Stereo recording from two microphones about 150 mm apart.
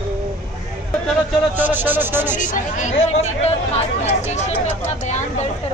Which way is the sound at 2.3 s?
60° left (ahead or behind).